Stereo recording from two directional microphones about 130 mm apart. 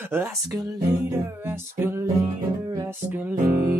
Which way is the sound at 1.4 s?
15° right (ahead or behind).